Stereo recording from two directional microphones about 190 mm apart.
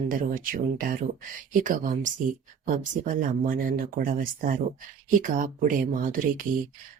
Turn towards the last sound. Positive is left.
turn(degrees=-45)  # may be behind; listen again after turning